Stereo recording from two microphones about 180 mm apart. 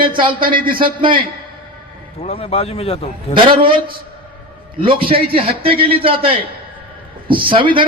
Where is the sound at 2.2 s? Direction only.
35° left (ahead or behind).